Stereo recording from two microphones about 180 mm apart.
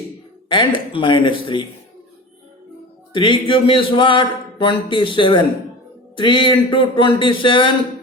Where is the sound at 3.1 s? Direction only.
25° left (ahead or behind).